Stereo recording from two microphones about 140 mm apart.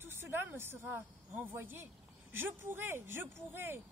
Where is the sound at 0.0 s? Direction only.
15° right (ahead or behind).